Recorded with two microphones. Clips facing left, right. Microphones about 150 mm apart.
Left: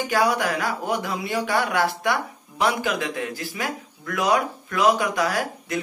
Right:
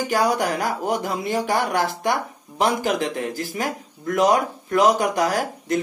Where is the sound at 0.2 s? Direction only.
40° right (ahead or behind).